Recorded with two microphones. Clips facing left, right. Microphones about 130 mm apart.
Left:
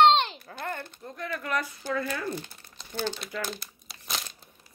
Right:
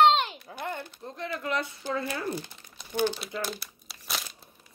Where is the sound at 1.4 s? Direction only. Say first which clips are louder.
Even; 25° right (ahead or behind).